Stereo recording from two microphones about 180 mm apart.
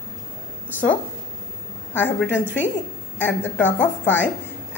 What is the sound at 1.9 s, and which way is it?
A woman's voice, 10° left (ahead or behind).